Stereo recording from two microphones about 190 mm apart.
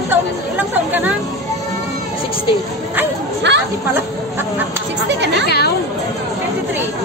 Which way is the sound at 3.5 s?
65° right (ahead or behind).